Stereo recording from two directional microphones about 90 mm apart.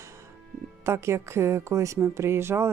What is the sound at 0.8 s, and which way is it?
Speech, 30° right (ahead or behind).